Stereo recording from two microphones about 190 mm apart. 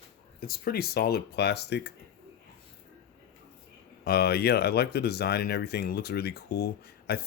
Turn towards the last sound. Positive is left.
turn(degrees=55)  # may be behind; listen again after turning